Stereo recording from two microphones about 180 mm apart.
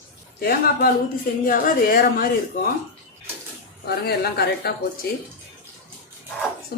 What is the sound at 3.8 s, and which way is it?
Speech, 65° left (ahead or behind).